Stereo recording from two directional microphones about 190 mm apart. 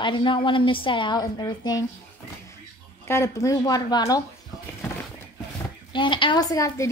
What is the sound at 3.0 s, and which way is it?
A woman's voice, 15° left (ahead or behind).